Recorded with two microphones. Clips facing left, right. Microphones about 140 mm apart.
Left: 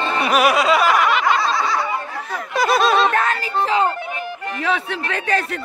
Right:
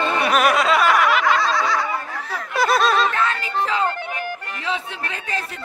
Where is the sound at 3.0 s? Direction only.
45° left (ahead or behind).